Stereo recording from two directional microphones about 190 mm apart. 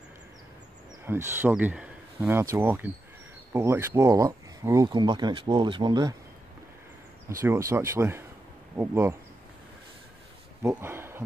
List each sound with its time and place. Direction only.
1.0 s speech: 10° right (ahead or behind)
7.2 s speech: 15° right (ahead or behind)
10.6 s speech: 10° right (ahead or behind)